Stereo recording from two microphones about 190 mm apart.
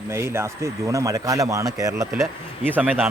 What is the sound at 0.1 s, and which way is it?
A man's voice, 15° right (ahead or behind).